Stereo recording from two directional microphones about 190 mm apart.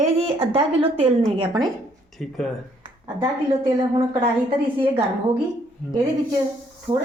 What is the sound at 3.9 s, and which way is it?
Speech, 20° right (ahead or behind).